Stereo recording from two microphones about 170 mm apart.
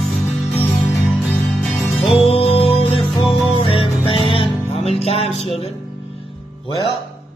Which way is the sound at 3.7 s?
30° left (ahead or behind).